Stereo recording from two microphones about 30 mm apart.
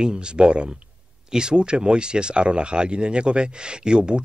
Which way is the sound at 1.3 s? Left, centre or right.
Right.